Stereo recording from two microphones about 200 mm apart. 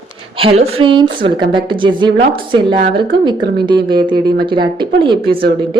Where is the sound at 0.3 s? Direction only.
30° right (ahead or behind).